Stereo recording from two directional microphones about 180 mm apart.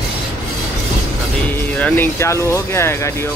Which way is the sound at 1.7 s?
10° left (ahead or behind).